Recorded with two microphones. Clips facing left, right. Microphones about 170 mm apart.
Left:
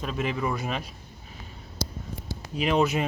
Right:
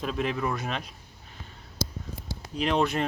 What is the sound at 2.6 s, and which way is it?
Speech, 5° left (ahead or behind).